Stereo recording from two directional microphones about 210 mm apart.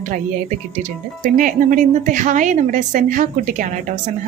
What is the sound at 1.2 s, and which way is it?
A woman's voice, 40° right (ahead or behind).